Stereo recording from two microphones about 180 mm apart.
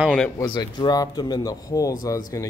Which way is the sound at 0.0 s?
5° right (ahead or behind).